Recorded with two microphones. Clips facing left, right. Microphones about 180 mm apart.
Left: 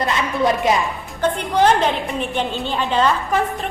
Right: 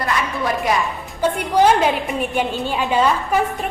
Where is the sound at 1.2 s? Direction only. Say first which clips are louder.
Right 1 dB; 10° right (ahead or behind).